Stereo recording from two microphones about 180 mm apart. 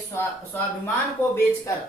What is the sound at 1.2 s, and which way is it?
Speech, 10° left (ahead or behind).